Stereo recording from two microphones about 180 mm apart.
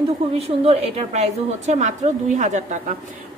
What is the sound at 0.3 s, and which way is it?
A woman's voice, 35° right (ahead or behind).